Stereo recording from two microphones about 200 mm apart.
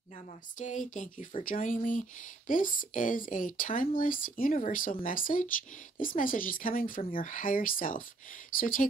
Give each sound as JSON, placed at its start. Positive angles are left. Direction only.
{"t": 0.6, "sound": "speech", "side_deg": 40}